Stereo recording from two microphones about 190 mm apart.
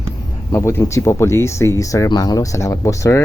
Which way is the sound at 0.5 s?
15° left (ahead or behind).